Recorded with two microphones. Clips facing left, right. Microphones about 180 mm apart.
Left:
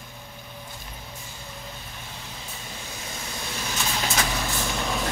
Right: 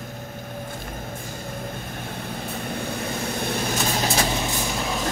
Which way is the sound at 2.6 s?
60° right (ahead or behind).